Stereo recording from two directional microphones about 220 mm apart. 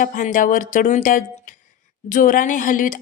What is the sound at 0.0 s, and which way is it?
Speech, 35° left (ahead or behind).